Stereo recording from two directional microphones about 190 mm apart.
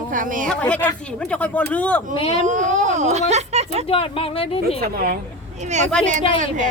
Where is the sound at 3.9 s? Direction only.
30° left (ahead or behind).